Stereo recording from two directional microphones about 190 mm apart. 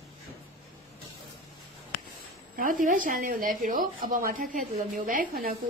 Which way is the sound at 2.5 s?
45° right (ahead or behind).